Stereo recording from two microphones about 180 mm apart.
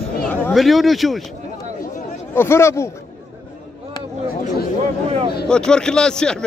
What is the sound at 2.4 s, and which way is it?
Speech, 15° left (ahead or behind).